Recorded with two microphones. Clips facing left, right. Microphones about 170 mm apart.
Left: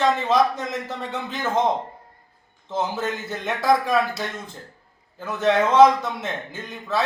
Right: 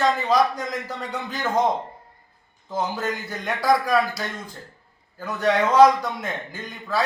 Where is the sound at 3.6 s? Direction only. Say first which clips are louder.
Even; 25° left (ahead or behind).